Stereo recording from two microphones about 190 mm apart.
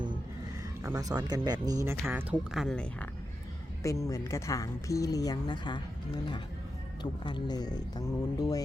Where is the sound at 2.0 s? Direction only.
10° right (ahead or behind).